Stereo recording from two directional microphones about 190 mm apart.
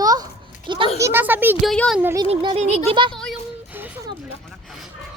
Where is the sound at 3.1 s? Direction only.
Centre (ahead or behind).